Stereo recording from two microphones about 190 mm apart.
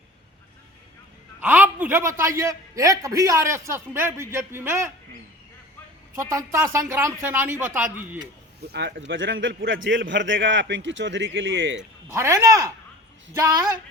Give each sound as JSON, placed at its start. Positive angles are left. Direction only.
{"t": 1.4, "sound": "a man's voice", "side_deg": -10}
{"t": 6.1, "sound": "a man's voice", "side_deg": -15}
{"t": 8.7, "sound": "a man's voice", "side_deg": -65}
{"t": 11.8, "sound": "a man's voice", "side_deg": -15}